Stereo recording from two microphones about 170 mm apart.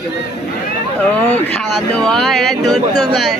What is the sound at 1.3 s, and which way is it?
Speech, 5° left (ahead or behind).